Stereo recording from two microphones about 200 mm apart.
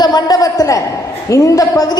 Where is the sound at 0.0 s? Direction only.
20° left (ahead or behind).